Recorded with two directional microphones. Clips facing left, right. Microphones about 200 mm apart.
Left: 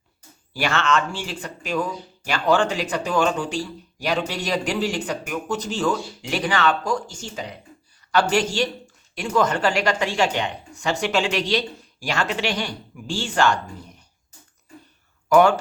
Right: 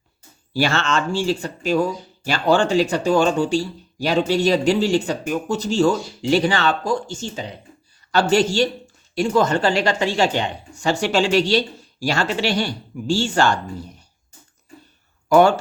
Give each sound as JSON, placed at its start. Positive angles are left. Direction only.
{"t": 0.5, "sound": "a woman's voice", "side_deg": -30}
{"t": 15.3, "sound": "speech", "side_deg": -30}